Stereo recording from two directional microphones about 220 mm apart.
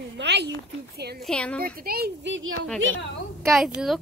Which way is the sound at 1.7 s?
45° right (ahead or behind).